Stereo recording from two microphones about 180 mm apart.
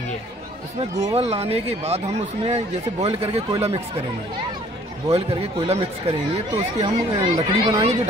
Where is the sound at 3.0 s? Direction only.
35° right (ahead or behind).